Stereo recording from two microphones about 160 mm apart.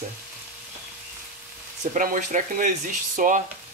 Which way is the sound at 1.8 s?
55° right (ahead or behind).